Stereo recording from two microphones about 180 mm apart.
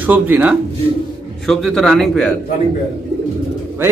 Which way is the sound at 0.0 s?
10° right (ahead or behind).